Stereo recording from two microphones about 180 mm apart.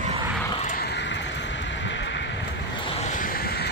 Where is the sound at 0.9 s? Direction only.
80° left.